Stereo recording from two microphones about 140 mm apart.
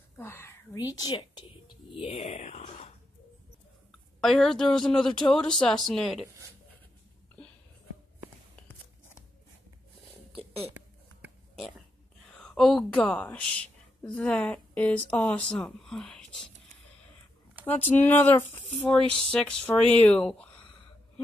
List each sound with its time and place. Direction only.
0.2 s whispering: 15° left (ahead or behind)
0.7 s speech: 25° left (ahead or behind); by 2.6 s 50° left (ahead or behind)
4.2 s speech: centre (ahead or behind)
10.7 s a sound: 10° right (ahead or behind)
12.3 s a woman's voice: 5° left (ahead or behind)
17.6 s speech: 15° left (ahead or behind)